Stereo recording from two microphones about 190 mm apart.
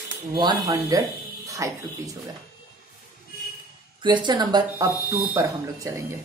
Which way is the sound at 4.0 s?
25° right (ahead or behind).